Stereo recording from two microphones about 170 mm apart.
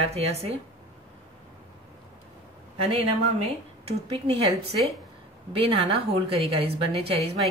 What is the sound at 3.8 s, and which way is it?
Speech, 35° right (ahead or behind).